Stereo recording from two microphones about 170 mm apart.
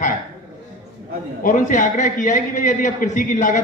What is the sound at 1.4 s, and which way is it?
A man's voice, 50° left (ahead or behind).